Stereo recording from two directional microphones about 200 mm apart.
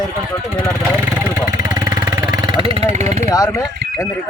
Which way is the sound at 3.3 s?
15° left (ahead or behind).